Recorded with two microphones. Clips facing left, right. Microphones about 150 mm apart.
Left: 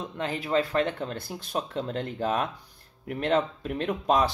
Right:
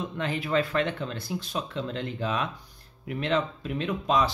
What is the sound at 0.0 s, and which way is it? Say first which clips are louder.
Speech: right 1 dB; 40° left (ahead or behind).